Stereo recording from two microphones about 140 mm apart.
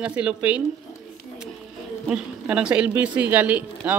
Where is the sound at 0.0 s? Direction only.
10° right (ahead or behind).